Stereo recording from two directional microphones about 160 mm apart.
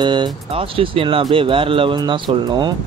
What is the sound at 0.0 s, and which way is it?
Speech, 30° right (ahead or behind).